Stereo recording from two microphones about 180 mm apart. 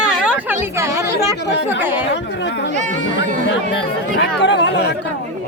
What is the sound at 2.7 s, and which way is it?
Speech, 40° right (ahead or behind).